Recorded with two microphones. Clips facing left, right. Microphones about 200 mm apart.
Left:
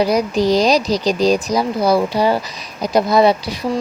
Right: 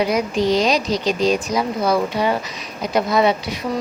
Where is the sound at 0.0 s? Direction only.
35° left (ahead or behind).